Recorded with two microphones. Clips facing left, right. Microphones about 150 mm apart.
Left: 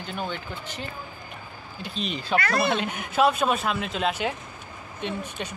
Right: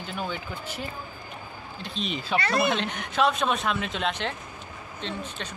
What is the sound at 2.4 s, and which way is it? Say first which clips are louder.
Speech: right 2 dB; 25° right (ahead or behind).